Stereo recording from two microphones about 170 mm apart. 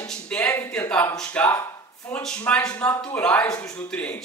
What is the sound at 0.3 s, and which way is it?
Speech, 10° left (ahead or behind).